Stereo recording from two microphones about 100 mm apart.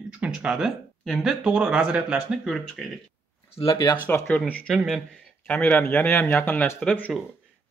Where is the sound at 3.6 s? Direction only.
35° left (ahead or behind).